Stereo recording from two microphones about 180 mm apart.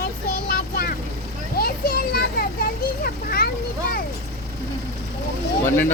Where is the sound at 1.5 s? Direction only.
60° left (ahead or behind).